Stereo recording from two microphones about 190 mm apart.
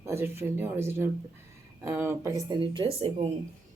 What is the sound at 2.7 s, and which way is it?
Speech, 30° right (ahead or behind).